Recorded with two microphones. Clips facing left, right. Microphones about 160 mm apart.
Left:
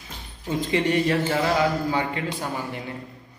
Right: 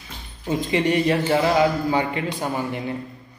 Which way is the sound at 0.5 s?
15° right (ahead or behind).